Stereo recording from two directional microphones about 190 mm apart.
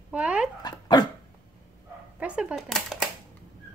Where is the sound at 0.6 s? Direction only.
20° left (ahead or behind).